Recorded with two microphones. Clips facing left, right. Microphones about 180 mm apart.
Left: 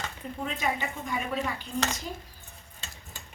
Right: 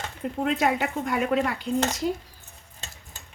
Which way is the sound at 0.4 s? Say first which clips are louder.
Right 7 dB; 75° right (ahead or behind).